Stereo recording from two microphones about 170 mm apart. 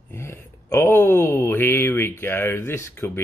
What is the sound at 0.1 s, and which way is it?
Speech, 15° left (ahead or behind).